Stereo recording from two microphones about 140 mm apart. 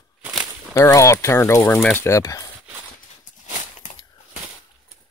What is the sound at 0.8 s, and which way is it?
Speech, 20° left (ahead or behind).